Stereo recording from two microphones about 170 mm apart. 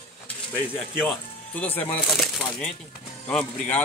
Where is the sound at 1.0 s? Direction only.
10° left (ahead or behind).